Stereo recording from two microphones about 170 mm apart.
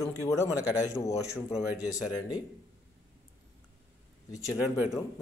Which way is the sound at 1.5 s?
5° right (ahead or behind).